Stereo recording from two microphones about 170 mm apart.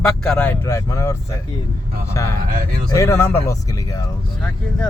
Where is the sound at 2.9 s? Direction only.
15° left (ahead or behind).